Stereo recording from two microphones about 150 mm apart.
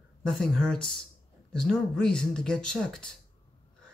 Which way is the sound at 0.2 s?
Centre (ahead or behind).